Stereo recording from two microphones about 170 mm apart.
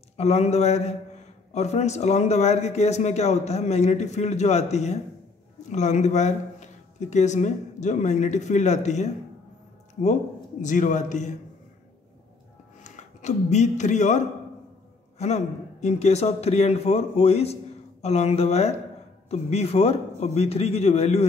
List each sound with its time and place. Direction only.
0.2 s speech: 40° left (ahead or behind)
10.6 s speech: 45° left (ahead or behind)
12.8 s speech: 45° left (ahead or behind)